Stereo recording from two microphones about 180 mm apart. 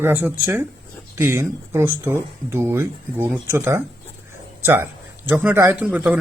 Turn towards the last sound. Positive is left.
turn(degrees=-10)  # may be behind; listen again after turning